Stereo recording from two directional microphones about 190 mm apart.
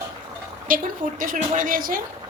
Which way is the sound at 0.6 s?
45° right (ahead or behind).